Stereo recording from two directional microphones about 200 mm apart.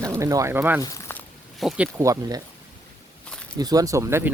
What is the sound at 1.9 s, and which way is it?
Speech, 20° right (ahead or behind).